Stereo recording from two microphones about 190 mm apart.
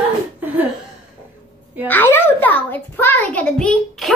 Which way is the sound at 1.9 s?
10° left (ahead or behind).